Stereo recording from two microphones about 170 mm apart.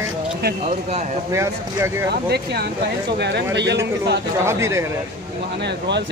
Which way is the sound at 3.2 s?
85° right.